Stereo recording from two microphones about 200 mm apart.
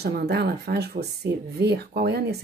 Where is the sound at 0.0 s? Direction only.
55° right (ahead or behind).